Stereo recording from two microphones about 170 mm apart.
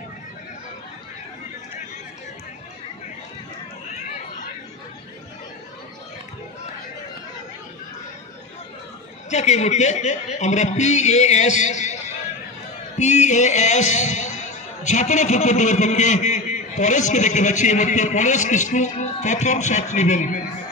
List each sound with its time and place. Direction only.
9.3 s a man's voice: 40° left (ahead or behind)